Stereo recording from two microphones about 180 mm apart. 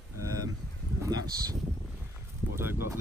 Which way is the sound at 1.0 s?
20° right (ahead or behind).